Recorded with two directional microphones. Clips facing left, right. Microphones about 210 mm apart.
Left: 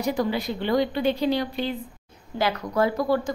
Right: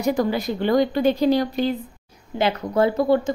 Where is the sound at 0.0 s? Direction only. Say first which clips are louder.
Right 4 dB; 45° right (ahead or behind).